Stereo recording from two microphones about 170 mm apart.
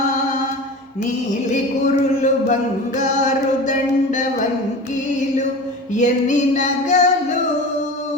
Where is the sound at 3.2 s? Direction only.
45° left (ahead or behind).